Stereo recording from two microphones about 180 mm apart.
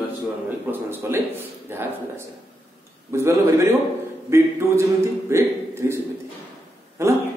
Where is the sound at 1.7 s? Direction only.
10° right (ahead or behind).